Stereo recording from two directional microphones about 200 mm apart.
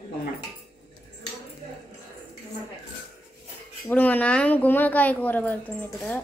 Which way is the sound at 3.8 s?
10° left (ahead or behind).